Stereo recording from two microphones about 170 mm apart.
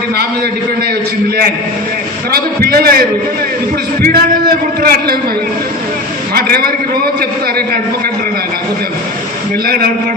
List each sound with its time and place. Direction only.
2.6 s a man's voice: 65° right (ahead or behind)
4.0 s a man's voice: 65° right (ahead or behind)
6.3 s a man's voice: 65° right (ahead or behind)
9.6 s a man's voice: 60° right (ahead or behind)